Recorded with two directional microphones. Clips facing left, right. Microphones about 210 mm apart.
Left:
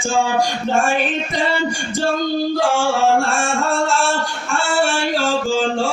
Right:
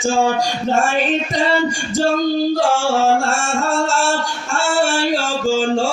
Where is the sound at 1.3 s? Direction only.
45° right (ahead or behind).